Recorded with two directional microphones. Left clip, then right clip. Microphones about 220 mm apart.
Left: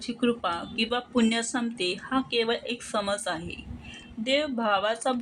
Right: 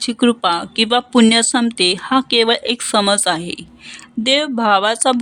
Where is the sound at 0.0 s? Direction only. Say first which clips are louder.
Right 12 dB; 50° right (ahead or behind).